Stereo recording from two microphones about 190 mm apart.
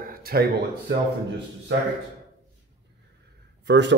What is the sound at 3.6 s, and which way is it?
Speech, 65° right (ahead or behind).